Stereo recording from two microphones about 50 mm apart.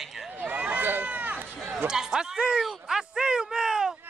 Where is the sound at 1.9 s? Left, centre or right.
Centre.